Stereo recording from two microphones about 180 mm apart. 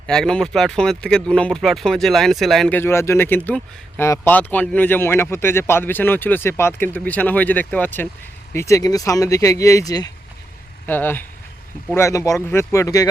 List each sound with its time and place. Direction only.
0.1 s speech: 5° left (ahead or behind)